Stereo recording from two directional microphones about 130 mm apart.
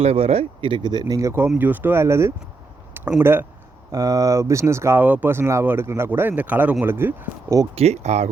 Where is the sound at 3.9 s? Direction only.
25° right (ahead or behind).